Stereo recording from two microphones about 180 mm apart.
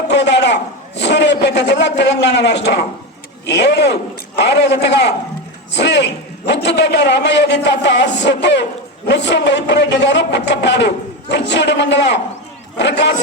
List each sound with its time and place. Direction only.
0.1 s a man's voice: 75° left (ahead or behind)